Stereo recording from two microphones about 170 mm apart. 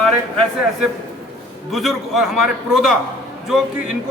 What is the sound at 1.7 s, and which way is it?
A man's voice, centre (ahead or behind).